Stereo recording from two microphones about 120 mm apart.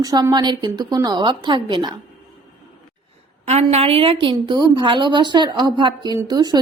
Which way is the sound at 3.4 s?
55° right (ahead or behind).